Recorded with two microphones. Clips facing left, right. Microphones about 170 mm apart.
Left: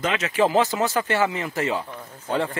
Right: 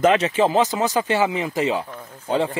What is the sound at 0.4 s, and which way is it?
Speech, 20° right (ahead or behind).